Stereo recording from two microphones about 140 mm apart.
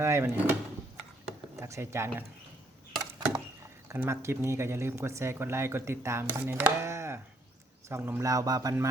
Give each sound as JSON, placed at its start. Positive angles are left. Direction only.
{"t": 0.0, "sound": "speech", "side_deg": -20}
{"t": 1.5, "sound": "speech", "side_deg": -20}
{"t": 3.0, "sound": "a sound", "side_deg": -30}
{"t": 3.8, "sound": "speech", "side_deg": -15}